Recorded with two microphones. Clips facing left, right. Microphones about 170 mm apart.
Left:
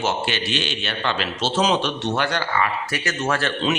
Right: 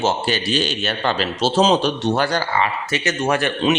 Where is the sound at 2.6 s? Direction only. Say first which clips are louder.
Right 3 dB; 25° right (ahead or behind).